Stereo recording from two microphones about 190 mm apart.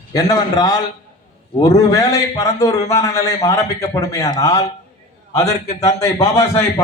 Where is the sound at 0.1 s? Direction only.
20° left (ahead or behind).